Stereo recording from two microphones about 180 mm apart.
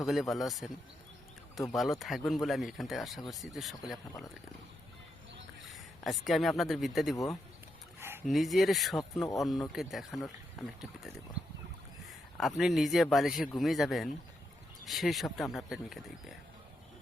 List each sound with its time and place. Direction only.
0.0 s speech: centre (ahead or behind)
1.7 s speech: centre (ahead or behind)
5.6 s speech: centre (ahead or behind)
7.9 s a sound: 15° right (ahead or behind)
8.3 s speech: centre (ahead or behind)
12.4 s speech: centre (ahead or behind)